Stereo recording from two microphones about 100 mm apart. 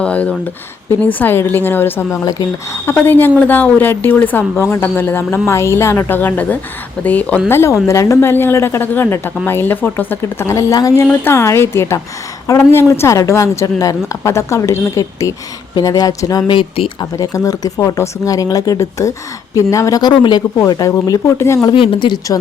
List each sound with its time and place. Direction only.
0.0 s a woman's voice: 10° left (ahead or behind); by 11.0 s 35° left (ahead or behind)
11.1 s a woman's voice: 20° left (ahead or behind); by 16.4 s 40° left (ahead or behind)
16.5 s speech: 60° left (ahead or behind)
17.0 s a woman's voice: 35° left (ahead or behind)
20.0 s a woman's voice: 45° left (ahead or behind); by 21.7 s 25° left (ahead or behind)
21.7 s speech: 60° left (ahead or behind)